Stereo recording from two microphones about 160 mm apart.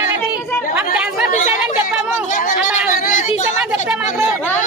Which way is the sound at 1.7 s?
55° left (ahead or behind).